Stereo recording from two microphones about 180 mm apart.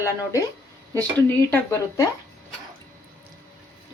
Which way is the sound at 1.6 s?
15° left (ahead or behind).